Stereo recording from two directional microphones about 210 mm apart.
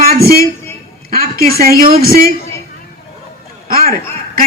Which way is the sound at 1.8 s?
45° right (ahead or behind).